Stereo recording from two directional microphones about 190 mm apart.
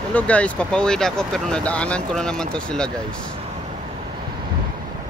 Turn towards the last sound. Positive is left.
turn(degrees=5)  # may be behind; listen again after turning